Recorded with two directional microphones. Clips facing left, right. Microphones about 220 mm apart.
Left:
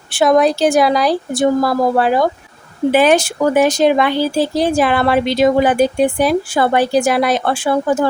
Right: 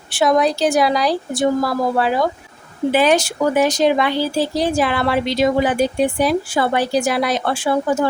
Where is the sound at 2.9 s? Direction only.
55° left (ahead or behind).